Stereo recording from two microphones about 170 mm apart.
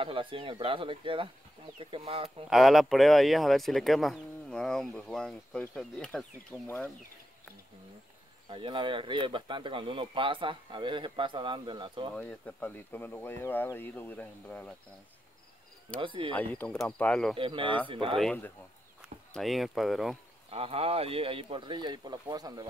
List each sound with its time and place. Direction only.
0.0 s speech: 30° right (ahead or behind)
2.5 s speech: centre (ahead or behind)
8.5 s speech: 30° right (ahead or behind)
12.2 s speech: 5° left (ahead or behind)
16.0 s speech: 30° right (ahead or behind)
16.3 s speech: 10° left (ahead or behind)
17.4 s speech: 30° right (ahead or behind)
18.1 s speech: 5° left (ahead or behind)
20.4 s speech: 35° right (ahead or behind)